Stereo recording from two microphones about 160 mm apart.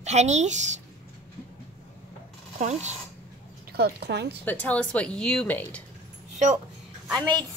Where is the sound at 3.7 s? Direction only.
90° right.